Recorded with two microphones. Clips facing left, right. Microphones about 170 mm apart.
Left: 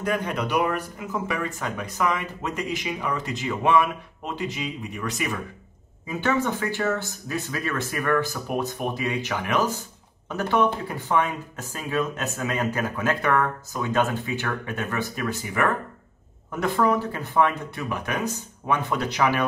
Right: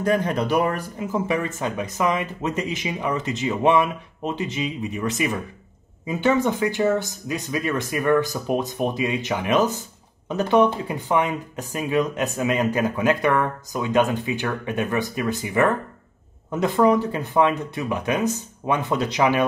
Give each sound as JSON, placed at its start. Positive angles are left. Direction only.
{"t": 0.0, "sound": "speech", "side_deg": -35}